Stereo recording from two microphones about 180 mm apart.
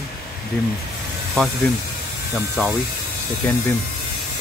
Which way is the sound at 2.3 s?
5° right (ahead or behind).